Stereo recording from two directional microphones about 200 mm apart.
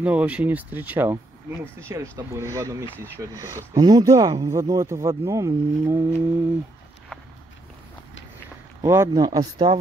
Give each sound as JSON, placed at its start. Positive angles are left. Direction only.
{"t": 0.0, "sound": "speech", "side_deg": -5}
{"t": 8.8, "sound": "speech", "side_deg": -15}